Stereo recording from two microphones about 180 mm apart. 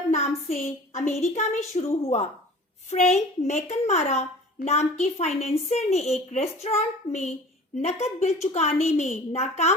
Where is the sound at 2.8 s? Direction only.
40° left (ahead or behind).